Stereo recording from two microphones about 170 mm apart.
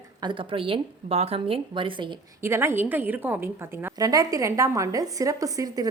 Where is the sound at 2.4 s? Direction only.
15° right (ahead or behind).